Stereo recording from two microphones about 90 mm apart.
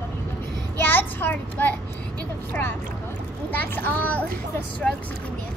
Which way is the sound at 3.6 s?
20° left (ahead or behind).